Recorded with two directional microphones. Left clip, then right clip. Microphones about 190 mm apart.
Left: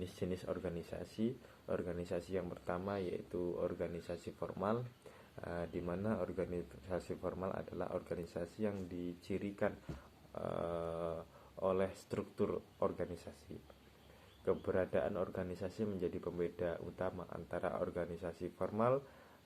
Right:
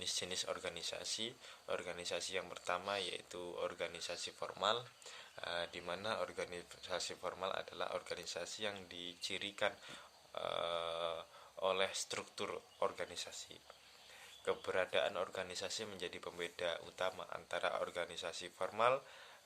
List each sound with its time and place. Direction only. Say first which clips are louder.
0.0 s speech: right 2 dB; 20° right (ahead or behind)
14.4 s speech: left 2 dB; 20° right (ahead or behind)